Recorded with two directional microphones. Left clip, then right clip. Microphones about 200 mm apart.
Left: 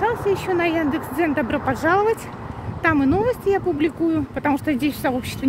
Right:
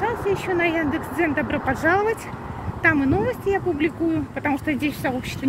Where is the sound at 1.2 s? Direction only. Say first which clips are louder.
Left 1 dB; 25° left (ahead or behind).